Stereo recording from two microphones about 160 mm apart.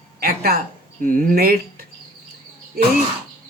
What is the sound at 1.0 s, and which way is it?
Speech, 60° right (ahead or behind).